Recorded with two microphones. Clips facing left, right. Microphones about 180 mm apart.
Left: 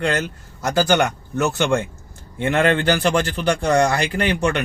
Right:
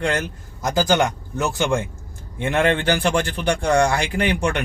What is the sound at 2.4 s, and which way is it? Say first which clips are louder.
A man's voice: left 1 dB; 15° right (ahead or behind).